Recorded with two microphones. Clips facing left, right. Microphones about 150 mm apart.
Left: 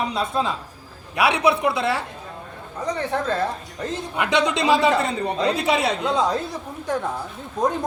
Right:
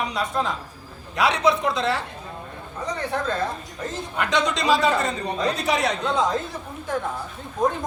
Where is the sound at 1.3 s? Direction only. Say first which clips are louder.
Left 1 dB; 10° left (ahead or behind).